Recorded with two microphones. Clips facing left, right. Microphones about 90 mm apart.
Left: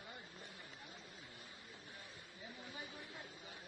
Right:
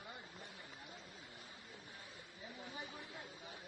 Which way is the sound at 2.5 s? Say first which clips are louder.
Right 2 dB; 20° right (ahead or behind).